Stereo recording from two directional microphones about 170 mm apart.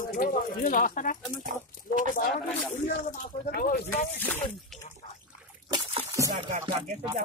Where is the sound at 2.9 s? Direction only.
60° left (ahead or behind).